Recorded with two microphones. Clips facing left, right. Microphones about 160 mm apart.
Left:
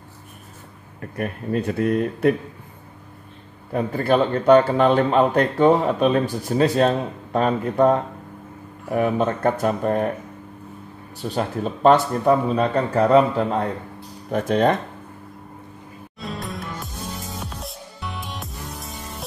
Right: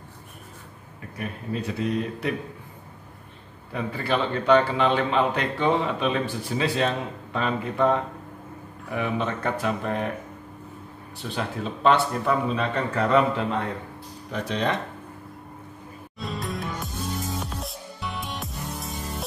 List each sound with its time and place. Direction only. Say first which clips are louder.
1.1 s speech: left 7 dB; 50° left (ahead or behind)
3.7 s speech: left 7 dB; 45° left (ahead or behind)
11.1 s speech: left 6 dB; 40° left (ahead or behind)
14.3 s speech: left 8 dB; 50° left (ahead or behind)
16.2 s music: even; centre (ahead or behind)